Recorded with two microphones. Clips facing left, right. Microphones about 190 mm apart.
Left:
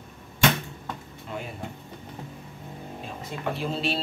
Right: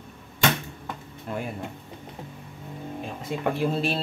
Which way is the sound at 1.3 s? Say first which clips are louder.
Right 4 dB; 50° right (ahead or behind).